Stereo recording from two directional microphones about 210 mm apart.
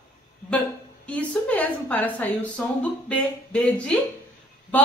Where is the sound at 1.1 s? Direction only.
5° left (ahead or behind).